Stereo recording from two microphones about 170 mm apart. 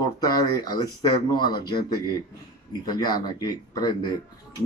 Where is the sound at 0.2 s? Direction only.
25° left (ahead or behind).